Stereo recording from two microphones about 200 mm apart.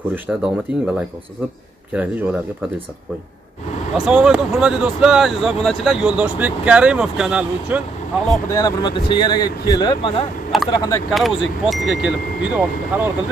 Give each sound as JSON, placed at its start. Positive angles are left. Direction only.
{"t": 0.1, "sound": "speech", "side_deg": -5}
{"t": 3.9, "sound": "speech", "side_deg": 0}
{"t": 8.5, "sound": "speech", "side_deg": 20}
{"t": 10.5, "sound": "speech", "side_deg": 0}